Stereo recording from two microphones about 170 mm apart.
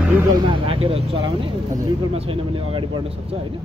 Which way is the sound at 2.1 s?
30° right (ahead or behind).